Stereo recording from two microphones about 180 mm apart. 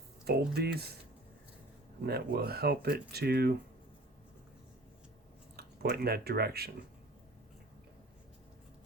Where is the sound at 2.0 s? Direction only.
60° right (ahead or behind).